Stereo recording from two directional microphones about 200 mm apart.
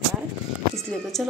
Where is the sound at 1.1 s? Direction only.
Centre (ahead or behind).